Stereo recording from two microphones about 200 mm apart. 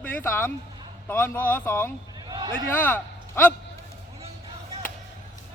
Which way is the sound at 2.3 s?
20° right (ahead or behind).